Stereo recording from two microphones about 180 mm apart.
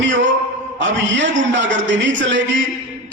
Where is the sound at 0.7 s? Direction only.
90° right.